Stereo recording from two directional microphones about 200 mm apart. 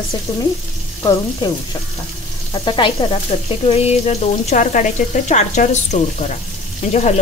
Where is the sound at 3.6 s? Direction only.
30° left (ahead or behind).